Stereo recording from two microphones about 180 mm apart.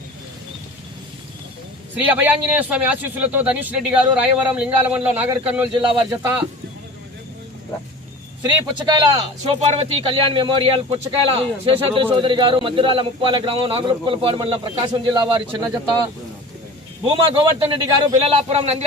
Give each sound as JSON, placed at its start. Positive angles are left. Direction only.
{"t": 2.0, "sound": "a man's voice", "side_deg": -10}
{"t": 8.4, "sound": "a man's voice", "side_deg": -25}
{"t": 17.1, "sound": "a man's voice", "side_deg": -30}
{"t": 18.2, "sound": "speech", "side_deg": -35}